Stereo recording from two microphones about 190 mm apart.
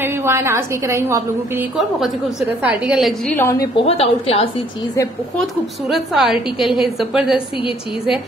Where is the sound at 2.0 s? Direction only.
Centre (ahead or behind).